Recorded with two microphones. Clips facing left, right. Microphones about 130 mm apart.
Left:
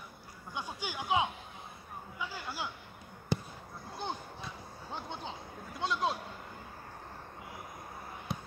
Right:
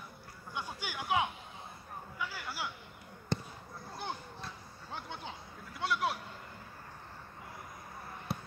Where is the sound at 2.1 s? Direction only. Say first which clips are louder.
Left 1 dB; 20° left (ahead or behind).